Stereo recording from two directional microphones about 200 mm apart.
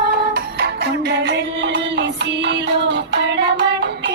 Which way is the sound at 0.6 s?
55° right (ahead or behind).